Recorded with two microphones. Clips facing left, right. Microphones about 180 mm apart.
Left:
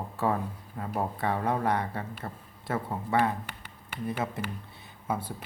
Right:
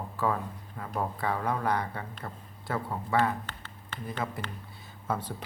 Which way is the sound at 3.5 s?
10° left (ahead or behind).